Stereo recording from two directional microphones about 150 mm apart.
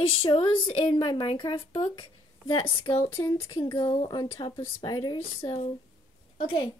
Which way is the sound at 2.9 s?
15° left (ahead or behind).